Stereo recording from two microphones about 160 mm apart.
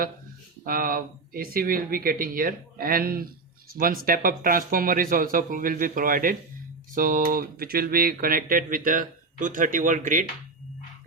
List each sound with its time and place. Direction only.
0.6 s speech: 65° right (ahead or behind)